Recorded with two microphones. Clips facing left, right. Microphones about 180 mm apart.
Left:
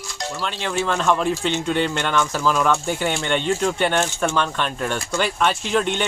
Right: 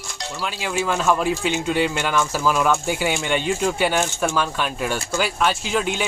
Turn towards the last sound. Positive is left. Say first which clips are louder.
# left 2 dB
turn(degrees=-5)  # may be behind; listen again after turning